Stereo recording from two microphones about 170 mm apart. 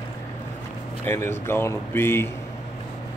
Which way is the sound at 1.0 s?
15° left (ahead or behind).